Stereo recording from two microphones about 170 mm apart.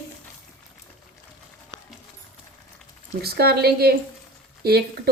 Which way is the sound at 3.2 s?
70° right (ahead or behind).